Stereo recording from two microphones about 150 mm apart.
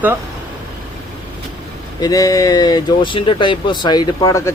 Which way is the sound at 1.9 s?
25° left (ahead or behind).